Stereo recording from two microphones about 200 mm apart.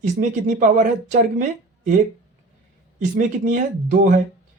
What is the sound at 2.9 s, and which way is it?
Speech, 40° right (ahead or behind).